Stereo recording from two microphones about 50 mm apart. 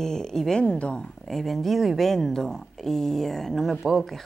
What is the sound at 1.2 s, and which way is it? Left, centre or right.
Speech, centre.